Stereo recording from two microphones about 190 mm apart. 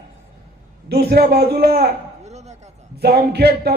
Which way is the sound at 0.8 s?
60° right (ahead or behind).